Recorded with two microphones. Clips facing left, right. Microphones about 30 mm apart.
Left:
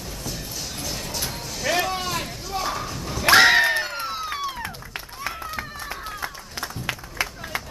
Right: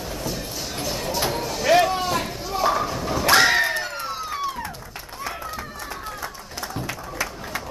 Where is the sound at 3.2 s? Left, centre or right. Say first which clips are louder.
Left 3 dB; centre.